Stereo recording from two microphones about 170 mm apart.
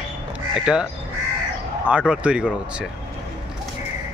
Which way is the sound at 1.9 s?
5° right (ahead or behind).